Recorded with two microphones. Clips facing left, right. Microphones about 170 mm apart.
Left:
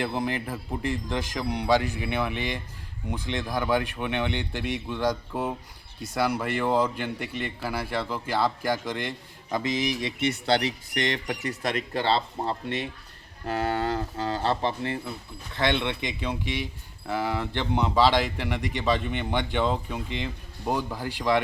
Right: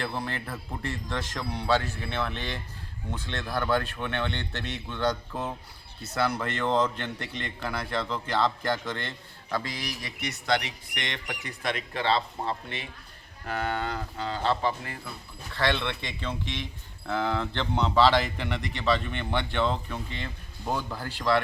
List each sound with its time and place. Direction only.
0.0 s a man's voice: 15° left (ahead or behind); by 14.7 s 40° left (ahead or behind)
15.5 s a man's voice: 20° left (ahead or behind)